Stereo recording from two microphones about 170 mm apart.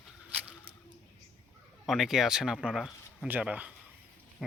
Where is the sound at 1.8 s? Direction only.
Centre (ahead or behind).